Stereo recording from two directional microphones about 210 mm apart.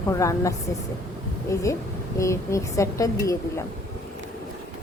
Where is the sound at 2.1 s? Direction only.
15° left (ahead or behind).